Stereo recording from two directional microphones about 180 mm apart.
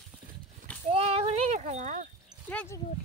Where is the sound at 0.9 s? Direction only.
35° right (ahead or behind).